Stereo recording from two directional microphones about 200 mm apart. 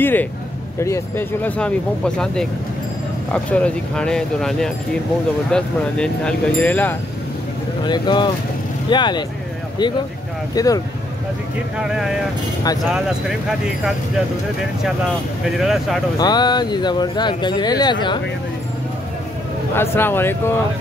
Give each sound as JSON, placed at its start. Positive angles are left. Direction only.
{"t": 0.0, "sound": "speech", "side_deg": 10}
{"t": 7.8, "sound": "speech", "side_deg": 20}
{"t": 10.5, "sound": "speech", "side_deg": 15}
{"t": 11.8, "sound": "speech", "side_deg": 0}
{"t": 15.4, "sound": "speech", "side_deg": 0}
{"t": 16.2, "sound": "speech", "side_deg": 20}
{"t": 19.7, "sound": "speech", "side_deg": 10}